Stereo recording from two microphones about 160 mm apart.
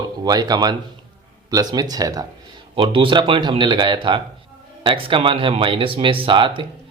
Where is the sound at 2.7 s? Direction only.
35° right (ahead or behind).